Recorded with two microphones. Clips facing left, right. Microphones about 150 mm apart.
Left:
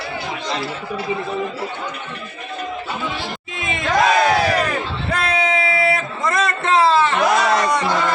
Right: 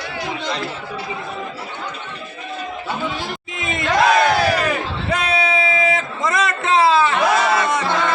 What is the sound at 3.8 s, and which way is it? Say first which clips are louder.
Crowd: right 1 dB; centre (ahead or behind).